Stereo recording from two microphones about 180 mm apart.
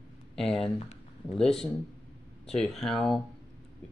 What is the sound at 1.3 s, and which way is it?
Speech, 5° left (ahead or behind).